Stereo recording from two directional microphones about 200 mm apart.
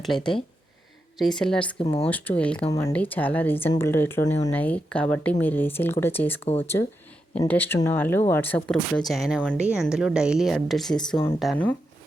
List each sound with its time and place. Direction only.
0.0 s a woman's voice: centre (ahead or behind)
1.8 s speech: 25° left (ahead or behind)
2.0 s speech: 10° left (ahead or behind)
2.6 s speech: 15° left (ahead or behind)
6.4 s speech: 30° left (ahead or behind)
7.3 s a woman's voice: 10° left (ahead or behind)